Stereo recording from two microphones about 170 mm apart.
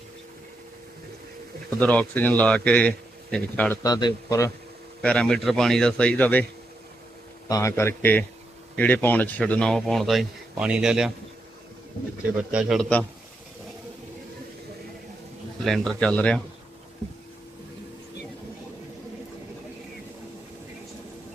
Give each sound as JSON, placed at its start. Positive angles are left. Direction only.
{"t": 1.8, "sound": "a man's voice", "side_deg": 10}
{"t": 3.8, "sound": "a man's voice", "side_deg": 20}
{"t": 5.0, "sound": "a man's voice", "side_deg": 5}
{"t": 7.4, "sound": "a man's voice", "side_deg": 20}
{"t": 12.4, "sound": "a man's voice", "side_deg": -5}
{"t": 15.9, "sound": "a man's voice", "side_deg": 5}